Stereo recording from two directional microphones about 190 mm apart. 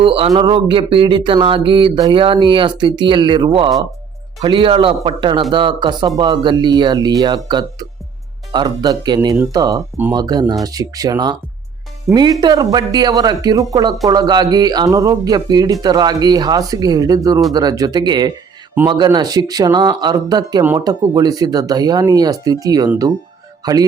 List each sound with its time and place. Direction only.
0.0 s a man's voice: 30° right (ahead or behind)
12.4 s a man's voice: 20° right (ahead or behind)